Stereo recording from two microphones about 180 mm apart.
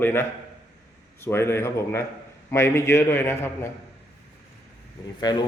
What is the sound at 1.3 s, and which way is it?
Speech, 15° left (ahead or behind).